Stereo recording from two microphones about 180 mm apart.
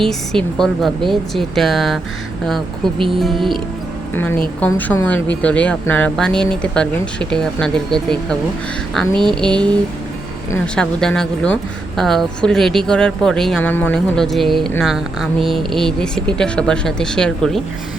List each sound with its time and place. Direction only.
0.0 s speech: 5° left (ahead or behind)
4.1 s speech: 10° left (ahead or behind)
10.8 s speech: 5° left (ahead or behind)
15.4 s a sound: 30° right (ahead or behind)
15.7 s speech: 5° left (ahead or behind)